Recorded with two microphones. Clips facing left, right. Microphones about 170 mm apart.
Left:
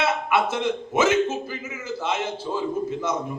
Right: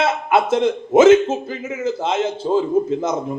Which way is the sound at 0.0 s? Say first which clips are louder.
Right 5 dB; 50° right (ahead or behind).